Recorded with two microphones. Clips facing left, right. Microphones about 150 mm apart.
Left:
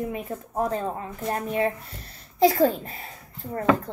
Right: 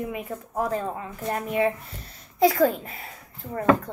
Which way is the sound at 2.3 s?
30° left (ahead or behind).